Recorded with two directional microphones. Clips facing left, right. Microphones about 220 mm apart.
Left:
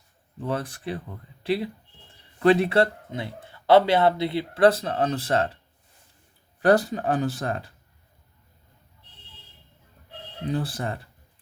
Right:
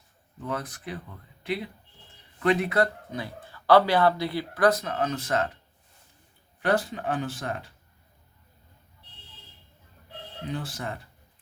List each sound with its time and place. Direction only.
0.3 s speech: 30° left (ahead or behind)
2.4 s speech: 30° left (ahead or behind)
6.6 s speech: 40° left (ahead or behind)
10.5 s speech: 35° left (ahead or behind)